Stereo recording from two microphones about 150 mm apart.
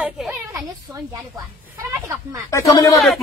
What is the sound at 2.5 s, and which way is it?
Speech, 20° left (ahead or behind).